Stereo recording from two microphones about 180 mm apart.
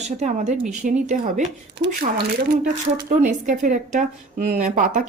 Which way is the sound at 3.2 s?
45° right (ahead or behind).